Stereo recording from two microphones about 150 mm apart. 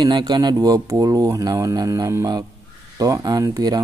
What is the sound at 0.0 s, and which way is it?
Speech, 30° right (ahead or behind).